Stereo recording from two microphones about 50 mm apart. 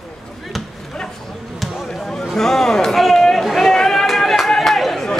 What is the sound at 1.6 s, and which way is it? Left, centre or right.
Basketball bounce, centre.